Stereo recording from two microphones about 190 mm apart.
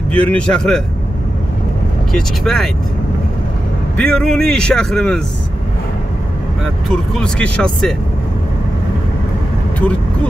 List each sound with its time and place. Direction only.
0.1 s a man's voice: 30° right (ahead or behind)
0.4 s speech: 5° left (ahead or behind)
2.1 s speech: centre (ahead or behind)
3.9 s speech: 5° left (ahead or behind)
7.2 s speech: 5° left (ahead or behind)